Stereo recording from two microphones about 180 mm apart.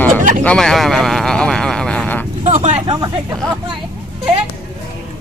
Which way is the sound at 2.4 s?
40° right (ahead or behind).